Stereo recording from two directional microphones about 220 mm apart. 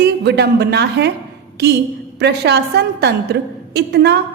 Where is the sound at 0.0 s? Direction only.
50° right (ahead or behind).